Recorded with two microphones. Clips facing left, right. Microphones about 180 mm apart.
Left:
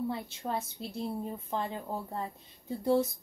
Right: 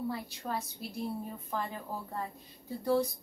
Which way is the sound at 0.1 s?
25° left (ahead or behind).